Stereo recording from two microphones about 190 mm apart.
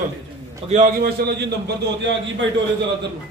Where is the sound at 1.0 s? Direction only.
60° right (ahead or behind).